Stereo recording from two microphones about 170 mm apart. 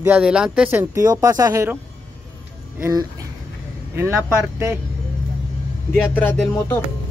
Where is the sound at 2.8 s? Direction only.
20° right (ahead or behind).